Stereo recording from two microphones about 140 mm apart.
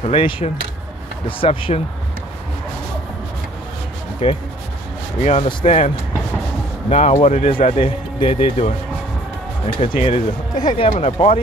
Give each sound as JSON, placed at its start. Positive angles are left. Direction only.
{"t": 0.0, "sound": "speech", "side_deg": 40}
{"t": 4.2, "sound": "speech", "side_deg": 40}
{"t": 5.2, "sound": "speech", "side_deg": 50}
{"t": 7.6, "sound": "speech", "side_deg": 45}
{"t": 9.8, "sound": "speech", "side_deg": 45}